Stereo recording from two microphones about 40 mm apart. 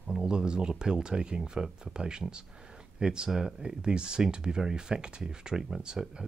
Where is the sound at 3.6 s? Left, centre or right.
Right.